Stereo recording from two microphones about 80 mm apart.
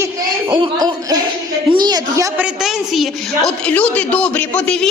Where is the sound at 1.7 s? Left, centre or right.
Right.